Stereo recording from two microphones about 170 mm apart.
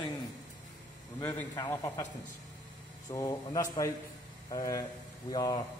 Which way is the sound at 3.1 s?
20° left (ahead or behind).